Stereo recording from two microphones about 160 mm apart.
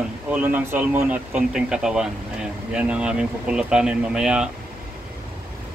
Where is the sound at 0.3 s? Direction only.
10° right (ahead or behind).